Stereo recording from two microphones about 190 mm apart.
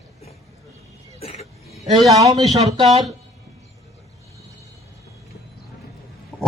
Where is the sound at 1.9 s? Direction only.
20° right (ahead or behind).